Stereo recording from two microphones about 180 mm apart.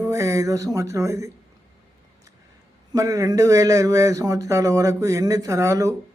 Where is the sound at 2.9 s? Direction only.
20° right (ahead or behind).